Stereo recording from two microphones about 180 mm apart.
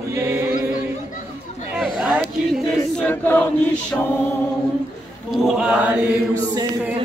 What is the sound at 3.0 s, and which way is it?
Chant, 10° left (ahead or behind).